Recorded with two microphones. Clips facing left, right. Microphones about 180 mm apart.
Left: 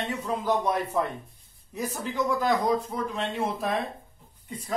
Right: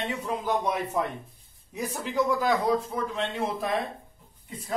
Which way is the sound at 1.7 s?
10° right (ahead or behind).